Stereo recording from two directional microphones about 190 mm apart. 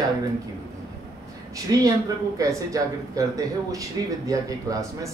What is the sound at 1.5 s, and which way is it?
Speech, 15° right (ahead or behind).